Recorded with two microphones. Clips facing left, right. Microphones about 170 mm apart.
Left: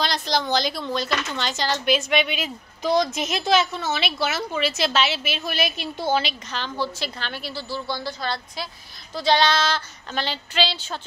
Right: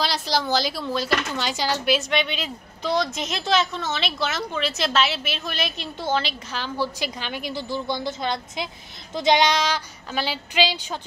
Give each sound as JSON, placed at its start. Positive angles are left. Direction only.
{"t": 0.0, "sound": "speech", "side_deg": -5}
{"t": 6.5, "sound": "a woman's voice", "side_deg": -10}